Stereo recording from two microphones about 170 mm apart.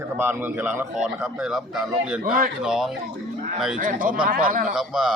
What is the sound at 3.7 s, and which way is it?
A man's voice, 50° right (ahead or behind).